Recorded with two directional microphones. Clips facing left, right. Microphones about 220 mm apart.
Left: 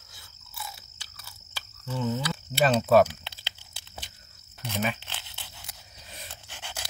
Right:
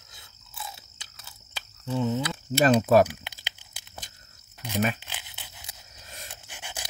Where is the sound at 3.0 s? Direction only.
15° right (ahead or behind).